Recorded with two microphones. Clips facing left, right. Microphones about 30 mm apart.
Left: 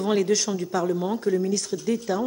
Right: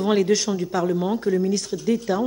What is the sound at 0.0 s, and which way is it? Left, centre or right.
Speech, centre.